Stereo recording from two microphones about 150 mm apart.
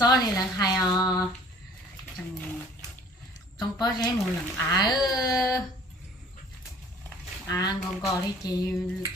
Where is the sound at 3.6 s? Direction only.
25° left (ahead or behind).